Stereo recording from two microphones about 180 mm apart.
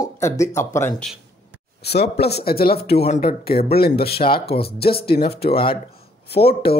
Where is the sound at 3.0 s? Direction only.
35° left (ahead or behind).